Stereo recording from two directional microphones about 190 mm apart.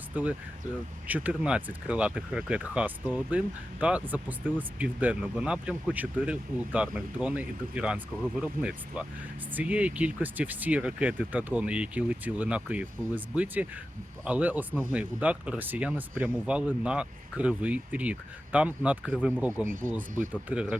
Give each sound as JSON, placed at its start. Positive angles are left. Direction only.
{"t": 1.0, "sound": "speech", "side_deg": -10}
{"t": 19.6, "sound": "speech", "side_deg": -45}
{"t": 20.3, "sound": "speech", "side_deg": -5}